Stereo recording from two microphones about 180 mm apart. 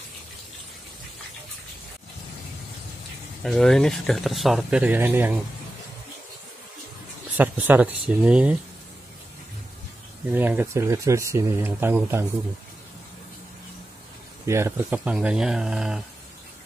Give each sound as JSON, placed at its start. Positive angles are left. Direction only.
{"t": 3.4, "sound": "speech", "side_deg": 0}
{"t": 7.3, "sound": "speech", "side_deg": -10}
{"t": 10.3, "sound": "speech", "side_deg": -10}
{"t": 14.4, "sound": "speech", "side_deg": -15}